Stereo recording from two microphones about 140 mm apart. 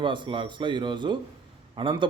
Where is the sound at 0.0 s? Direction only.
35° right (ahead or behind).